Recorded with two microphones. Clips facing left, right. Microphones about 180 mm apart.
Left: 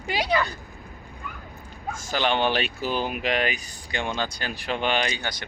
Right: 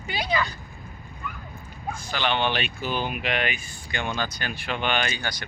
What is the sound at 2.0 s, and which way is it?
Speech, 45° left (ahead or behind).